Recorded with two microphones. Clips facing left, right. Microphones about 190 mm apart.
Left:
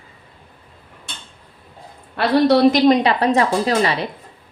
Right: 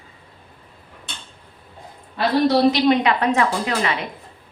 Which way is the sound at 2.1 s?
65° left (ahead or behind).